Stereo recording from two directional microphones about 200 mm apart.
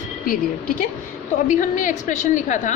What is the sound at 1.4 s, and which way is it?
A woman's voice, 40° left (ahead or behind).